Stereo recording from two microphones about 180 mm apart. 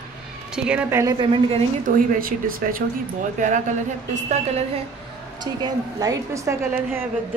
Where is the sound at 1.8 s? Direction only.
50° right (ahead or behind).